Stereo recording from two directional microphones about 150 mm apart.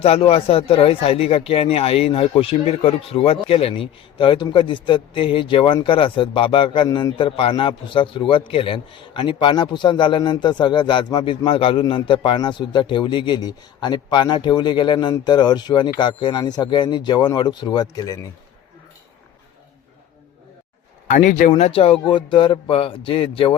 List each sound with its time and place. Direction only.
0.0 s speech: 40° left (ahead or behind); by 18.2 s 25° left (ahead or behind)
21.1 s speech: 55° left (ahead or behind)
21.6 s speech: 40° left (ahead or behind)